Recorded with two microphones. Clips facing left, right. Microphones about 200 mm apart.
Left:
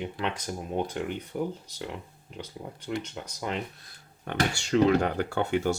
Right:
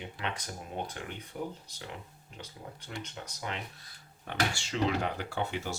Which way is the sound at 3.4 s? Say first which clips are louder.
Left 7 dB; 45° left (ahead or behind).